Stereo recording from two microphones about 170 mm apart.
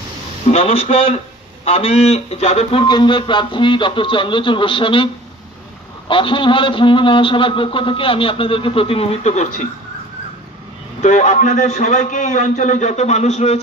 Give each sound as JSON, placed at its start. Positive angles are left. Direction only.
{"t": 0.5, "sound": "a man's voice", "side_deg": 35}
{"t": 11.0, "sound": "a man's voice", "side_deg": 45}